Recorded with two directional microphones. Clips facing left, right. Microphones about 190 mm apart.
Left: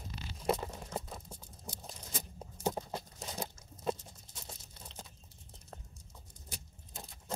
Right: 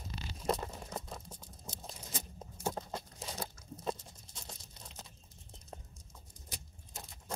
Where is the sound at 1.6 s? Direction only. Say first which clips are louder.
Left 1 dB; 10° left (ahead or behind).